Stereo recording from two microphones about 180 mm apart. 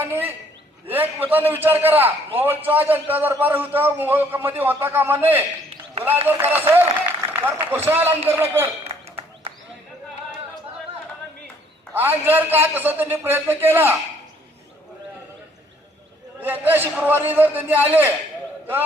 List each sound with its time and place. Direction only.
0.0 s a man's voice: 10° right (ahead or behind)
8.8 s a sound: 35° right (ahead or behind)
11.9 s a man's voice: 10° right (ahead or behind)
16.4 s a man's voice: 10° right (ahead or behind)